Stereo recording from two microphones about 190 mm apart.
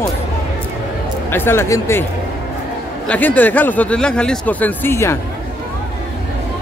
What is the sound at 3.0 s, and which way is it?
Speech, 10° left (ahead or behind).